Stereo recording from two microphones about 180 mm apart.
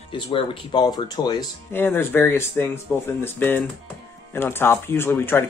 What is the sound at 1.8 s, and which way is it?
Speech, 10° left (ahead or behind).